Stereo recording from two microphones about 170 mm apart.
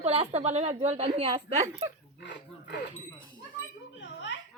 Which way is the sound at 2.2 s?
90° left.